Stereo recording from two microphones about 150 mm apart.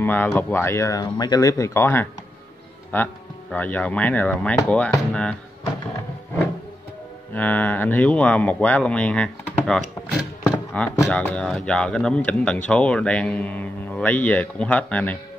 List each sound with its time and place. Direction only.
0.0 s speech: 15° left (ahead or behind)
7.3 s speech: 10° left (ahead or behind)